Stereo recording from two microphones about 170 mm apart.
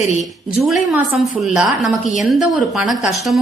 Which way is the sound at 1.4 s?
Centre (ahead or behind).